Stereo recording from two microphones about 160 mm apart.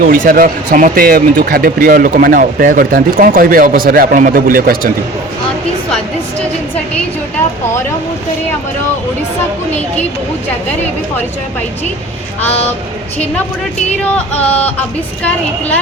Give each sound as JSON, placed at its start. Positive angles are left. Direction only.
{"t": 0.0, "sound": "speech", "side_deg": -65}
{"t": 15.2, "sound": "a woman's voice", "side_deg": 10}